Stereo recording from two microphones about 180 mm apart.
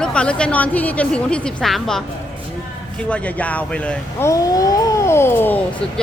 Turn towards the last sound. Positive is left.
turn(degrees=10)  # may be behind; listen again after turning